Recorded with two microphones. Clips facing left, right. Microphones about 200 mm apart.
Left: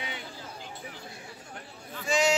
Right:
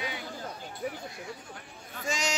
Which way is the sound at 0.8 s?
55° right (ahead or behind).